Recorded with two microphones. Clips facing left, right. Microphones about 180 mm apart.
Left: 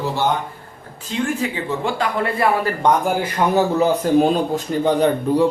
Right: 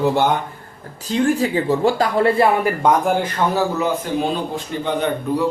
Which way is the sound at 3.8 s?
40° left (ahead or behind).